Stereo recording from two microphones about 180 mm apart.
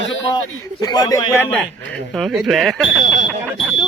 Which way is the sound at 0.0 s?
90° left.